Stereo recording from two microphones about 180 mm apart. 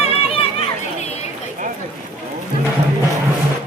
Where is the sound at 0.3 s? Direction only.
40° left (ahead or behind).